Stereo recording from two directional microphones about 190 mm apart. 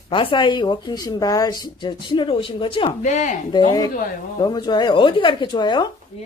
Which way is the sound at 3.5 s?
20° left (ahead or behind).